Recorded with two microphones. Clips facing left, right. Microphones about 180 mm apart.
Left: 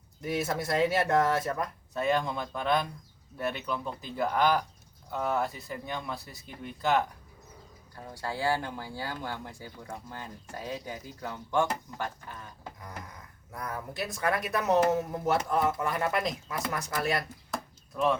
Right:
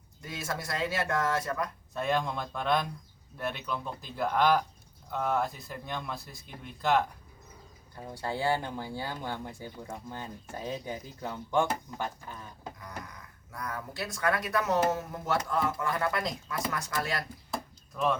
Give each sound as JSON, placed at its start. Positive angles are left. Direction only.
{"t": 0.2, "sound": "speech", "side_deg": 25}
{"t": 1.9, "sound": "speech", "side_deg": 0}
{"t": 8.2, "sound": "speech", "side_deg": -20}
{"t": 13.5, "sound": "speech", "side_deg": 20}